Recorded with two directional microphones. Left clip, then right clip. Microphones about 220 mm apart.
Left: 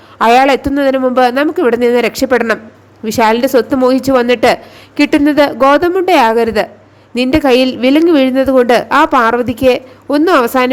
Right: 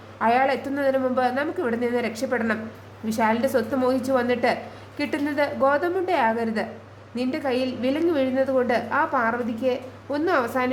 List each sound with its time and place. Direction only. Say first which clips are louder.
0.2 s a woman's voice: left 13 dB; 45° left (ahead or behind)